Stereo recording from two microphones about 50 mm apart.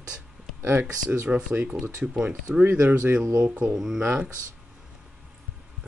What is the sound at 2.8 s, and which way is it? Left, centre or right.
Speech, right.